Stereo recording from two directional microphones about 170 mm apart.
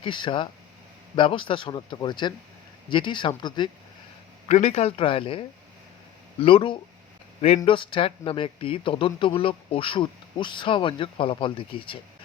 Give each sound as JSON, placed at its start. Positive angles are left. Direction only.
{"t": 0.0, "sound": "speech", "side_deg": 30}
{"t": 4.4, "sound": "speech", "side_deg": 40}